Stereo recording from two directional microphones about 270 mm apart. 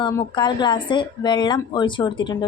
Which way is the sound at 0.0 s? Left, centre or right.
Centre.